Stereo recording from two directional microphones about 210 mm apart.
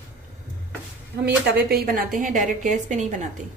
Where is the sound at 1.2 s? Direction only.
50° right (ahead or behind); by 3.1 s 35° right (ahead or behind).